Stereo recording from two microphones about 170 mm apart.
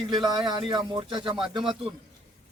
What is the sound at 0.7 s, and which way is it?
Speech, 25° right (ahead or behind).